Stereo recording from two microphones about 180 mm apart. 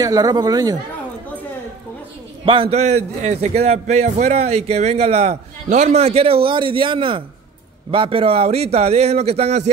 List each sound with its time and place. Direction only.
0.0 s a man's voice: 20° right (ahead or behind)
2.4 s a man's voice: 30° right (ahead or behind)